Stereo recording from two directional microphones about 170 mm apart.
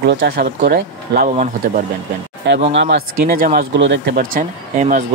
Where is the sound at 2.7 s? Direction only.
90° right.